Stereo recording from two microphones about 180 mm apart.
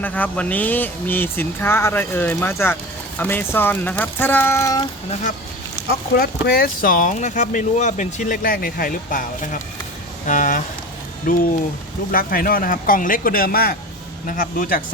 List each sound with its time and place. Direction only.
0.0 s speech: 10° left (ahead or behind)
6.1 s speech: 55° left (ahead or behind)